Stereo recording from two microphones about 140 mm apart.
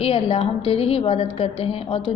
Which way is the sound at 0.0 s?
45° left (ahead or behind).